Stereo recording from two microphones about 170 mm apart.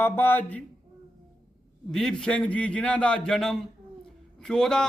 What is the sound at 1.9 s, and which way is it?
A man's voice, 5° left (ahead or behind).